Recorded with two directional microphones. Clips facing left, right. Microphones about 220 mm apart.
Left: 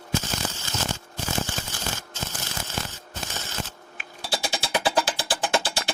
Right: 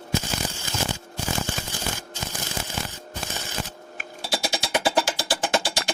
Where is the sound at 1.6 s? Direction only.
15° right (ahead or behind).